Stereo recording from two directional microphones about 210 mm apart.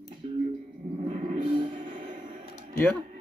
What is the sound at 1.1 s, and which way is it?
Music, 30° right (ahead or behind).